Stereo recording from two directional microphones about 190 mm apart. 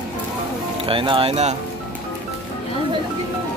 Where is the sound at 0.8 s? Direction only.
25° right (ahead or behind).